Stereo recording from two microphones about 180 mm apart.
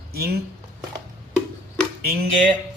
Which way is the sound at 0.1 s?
60° right (ahead or behind).